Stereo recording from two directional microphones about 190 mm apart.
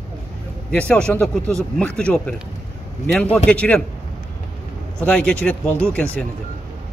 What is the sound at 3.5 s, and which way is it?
Speech, 5° left (ahead or behind).